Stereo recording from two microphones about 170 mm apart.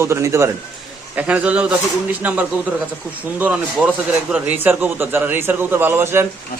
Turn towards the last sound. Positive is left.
turn(degrees=-15)  # may be behind; listen again after turning